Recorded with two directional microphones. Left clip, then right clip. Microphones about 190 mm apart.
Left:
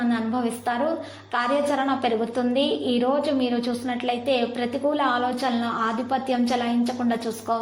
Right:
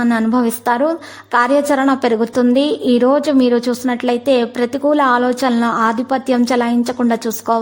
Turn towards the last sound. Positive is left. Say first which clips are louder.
# right 9 dB
turn(degrees=-45)  # may be behind; listen again after turning